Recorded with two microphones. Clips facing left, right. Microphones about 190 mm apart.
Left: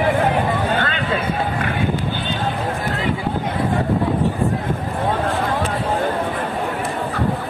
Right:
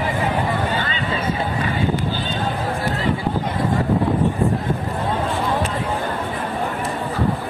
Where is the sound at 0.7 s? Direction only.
60° left (ahead or behind).